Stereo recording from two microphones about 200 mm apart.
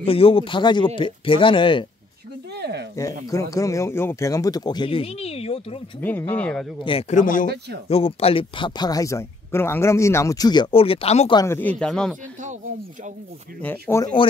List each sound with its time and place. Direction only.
0.0 s speech: 30° left (ahead or behind)
2.5 s speech: 55° right (ahead or behind)
3.0 s speech: 15° left (ahead or behind)
5.9 s speech: 10° left (ahead or behind)
6.8 s a man's voice: 30° left (ahead or behind)
7.4 s speech: 55° right (ahead or behind)
7.9 s speech: 30° left (ahead or behind)
11.3 s speech: 10° left (ahead or behind)
13.6 s speech: 10° left (ahead or behind)